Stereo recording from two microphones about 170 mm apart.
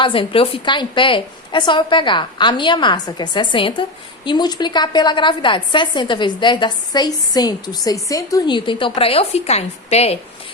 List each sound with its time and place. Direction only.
0.0 s a woman's voice: 30° left (ahead or behind)